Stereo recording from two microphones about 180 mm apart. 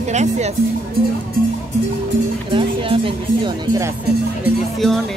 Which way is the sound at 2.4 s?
30° right (ahead or behind).